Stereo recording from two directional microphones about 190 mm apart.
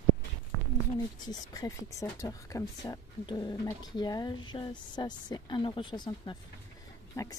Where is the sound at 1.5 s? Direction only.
20° left (ahead or behind).